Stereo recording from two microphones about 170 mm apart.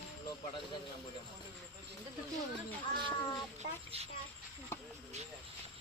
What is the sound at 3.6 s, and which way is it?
Speech, 40° right (ahead or behind).